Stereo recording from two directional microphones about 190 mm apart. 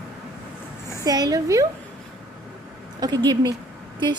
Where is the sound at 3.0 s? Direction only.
20° right (ahead or behind).